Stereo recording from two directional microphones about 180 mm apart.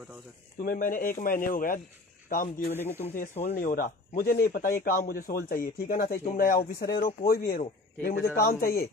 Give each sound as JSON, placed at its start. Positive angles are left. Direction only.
{"t": 0.6, "sound": "speech", "side_deg": 50}
{"t": 2.7, "sound": "speech", "side_deg": 10}
{"t": 3.2, "sound": "speech", "side_deg": 45}